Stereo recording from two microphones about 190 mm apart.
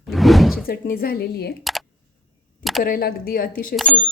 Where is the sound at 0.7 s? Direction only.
50° left (ahead or behind).